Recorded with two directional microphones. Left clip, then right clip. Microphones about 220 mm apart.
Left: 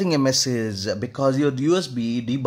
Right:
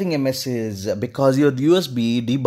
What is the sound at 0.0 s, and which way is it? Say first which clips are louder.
Speech: left 1 dB; 5° left (ahead or behind).